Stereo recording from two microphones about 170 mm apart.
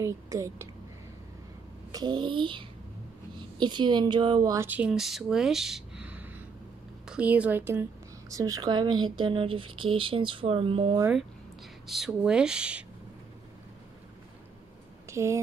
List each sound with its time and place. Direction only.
0.0 s a woman's voice: 15° right (ahead or behind)
1.9 s a woman's voice: 25° right (ahead or behind)
4.6 s a woman's voice: 5° right (ahead or behind); by 11.0 s 30° right (ahead or behind)
11.9 s speech: 5° right (ahead or behind)
15.0 s speech: 15° right (ahead or behind)